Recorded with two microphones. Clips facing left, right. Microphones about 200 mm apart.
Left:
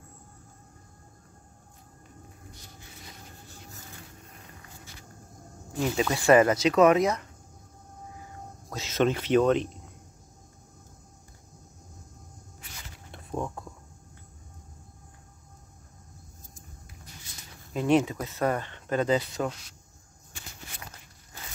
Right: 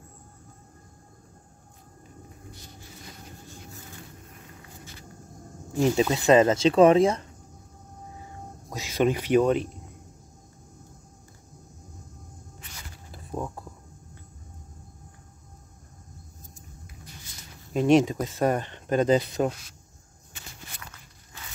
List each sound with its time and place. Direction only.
6.0 s speech: 20° right (ahead or behind)
8.6 s speech: 15° right (ahead or behind)
13.1 s a sound: 5° right (ahead or behind)
17.7 s a sound: 20° right (ahead or behind)
18.0 s speech: 35° right (ahead or behind)
18.4 s speech: 20° right (ahead or behind)